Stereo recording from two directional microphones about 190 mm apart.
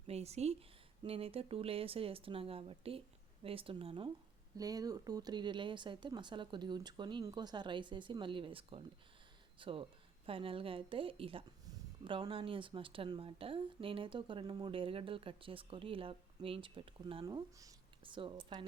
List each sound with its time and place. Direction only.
0.1 s speech: 35° right (ahead or behind)
17.2 s speech: 20° right (ahead or behind)